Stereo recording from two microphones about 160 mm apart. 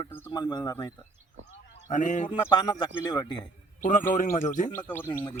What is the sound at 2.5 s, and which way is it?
Speech, 25° left (ahead or behind).